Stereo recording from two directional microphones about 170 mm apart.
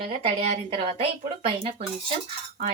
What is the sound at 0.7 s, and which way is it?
Speech, 35° right (ahead or behind).